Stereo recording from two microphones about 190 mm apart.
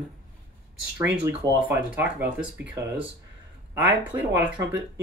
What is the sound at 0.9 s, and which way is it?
Speech, 10° right (ahead or behind).